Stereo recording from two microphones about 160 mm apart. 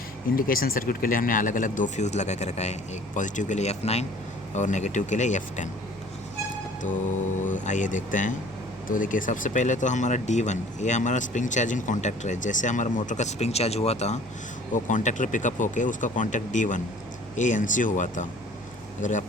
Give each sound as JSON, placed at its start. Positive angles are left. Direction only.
{"t": 0.3, "sound": "speech", "side_deg": 65}
{"t": 7.4, "sound": "speech", "side_deg": 50}